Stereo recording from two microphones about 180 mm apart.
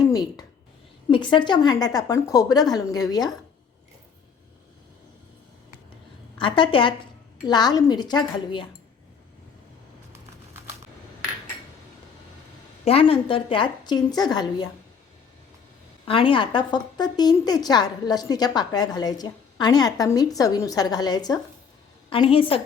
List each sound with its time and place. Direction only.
0.0 s a sound: 20° left (ahead or behind)
1.1 s a woman's voice: 25° left (ahead or behind)
6.3 s a woman's voice: 25° left (ahead or behind)
12.8 s a woman's voice: 30° left (ahead or behind)
16.0 s a woman's voice: 30° left (ahead or behind)